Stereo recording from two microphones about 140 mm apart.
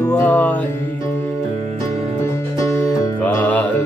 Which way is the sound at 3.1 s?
10° left (ahead or behind).